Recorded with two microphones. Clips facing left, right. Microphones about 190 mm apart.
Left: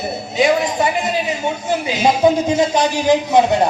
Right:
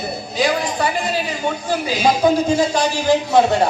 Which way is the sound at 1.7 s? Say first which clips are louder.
Left 1 dB; 20° left (ahead or behind).